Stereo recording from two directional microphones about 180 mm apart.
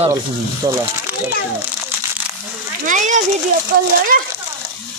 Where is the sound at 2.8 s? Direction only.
45° right (ahead or behind).